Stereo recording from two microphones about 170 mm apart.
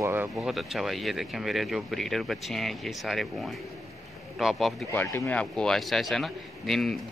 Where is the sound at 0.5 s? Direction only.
Centre (ahead or behind).